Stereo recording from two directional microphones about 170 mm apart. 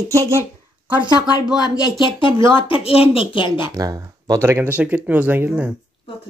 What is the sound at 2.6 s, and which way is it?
Speech, 35° left (ahead or behind).